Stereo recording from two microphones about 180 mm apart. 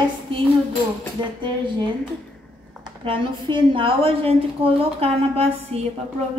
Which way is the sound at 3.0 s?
25° right (ahead or behind).